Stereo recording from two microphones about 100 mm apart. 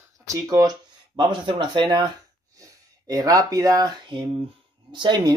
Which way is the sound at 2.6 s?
35° right (ahead or behind).